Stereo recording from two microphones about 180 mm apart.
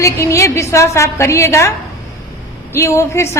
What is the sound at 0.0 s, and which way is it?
A woman's voice, 15° left (ahead or behind).